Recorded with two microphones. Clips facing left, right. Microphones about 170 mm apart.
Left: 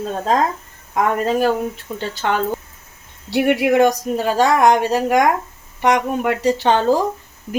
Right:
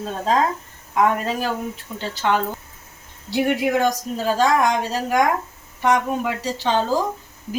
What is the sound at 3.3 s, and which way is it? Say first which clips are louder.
Speech: left 4 dB; 65° left (ahead or behind).